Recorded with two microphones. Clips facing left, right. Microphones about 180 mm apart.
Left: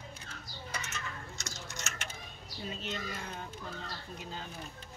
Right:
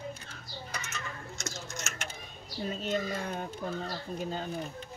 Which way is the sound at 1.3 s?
45° right (ahead or behind).